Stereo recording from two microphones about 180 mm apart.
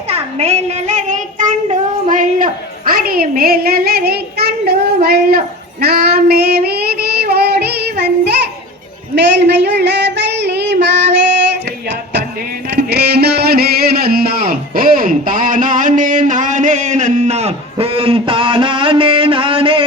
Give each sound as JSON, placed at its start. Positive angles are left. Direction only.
{"t": 0.1, "sound": "child singing", "side_deg": -35}
{"t": 5.0, "sound": "a sound", "side_deg": -60}
{"t": 5.8, "sound": "child singing", "side_deg": -60}
{"t": 9.1, "sound": "child singing", "side_deg": -70}
{"t": 12.7, "sound": "music", "side_deg": -65}